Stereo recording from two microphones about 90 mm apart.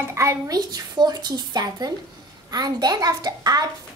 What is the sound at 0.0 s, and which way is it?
Speech, 30° right (ahead or behind).